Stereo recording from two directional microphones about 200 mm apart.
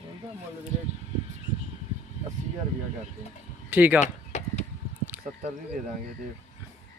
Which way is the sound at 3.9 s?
35° left (ahead or behind).